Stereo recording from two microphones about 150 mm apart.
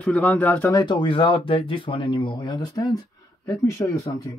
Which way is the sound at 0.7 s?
30° left (ahead or behind).